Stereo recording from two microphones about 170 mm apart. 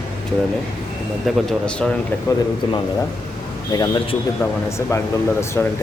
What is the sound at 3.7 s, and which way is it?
Speech, 25° left (ahead or behind).